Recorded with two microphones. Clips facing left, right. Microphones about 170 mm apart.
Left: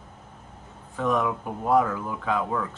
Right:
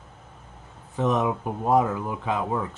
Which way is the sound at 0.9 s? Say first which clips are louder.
Right 1 dB; 20° right (ahead or behind).